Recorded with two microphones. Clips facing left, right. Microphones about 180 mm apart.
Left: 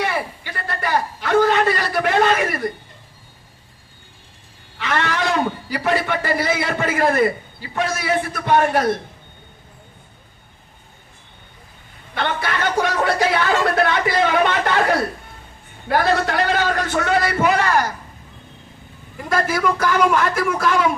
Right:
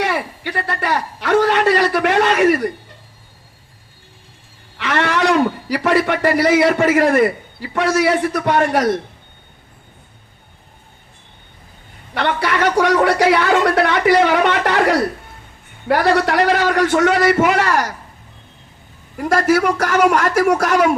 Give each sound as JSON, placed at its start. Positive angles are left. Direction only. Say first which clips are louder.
{"t": 0.0, "sound": "a man's voice", "louder": "right 3 dB", "side_deg": -75}
{"t": 4.8, "sound": "a man's voice", "louder": "right 4 dB", "side_deg": -75}
{"t": 12.1, "sound": "a man's voice", "louder": "right 4 dB", "side_deg": -75}
{"t": 19.1, "sound": "a man's voice", "louder": "right 6 dB", "side_deg": -75}